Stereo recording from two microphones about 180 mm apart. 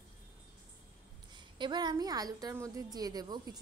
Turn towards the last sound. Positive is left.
turn(degrees=-20)  # may be behind; listen again after turning